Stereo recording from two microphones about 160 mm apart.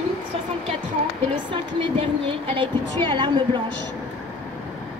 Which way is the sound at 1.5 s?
35° right (ahead or behind).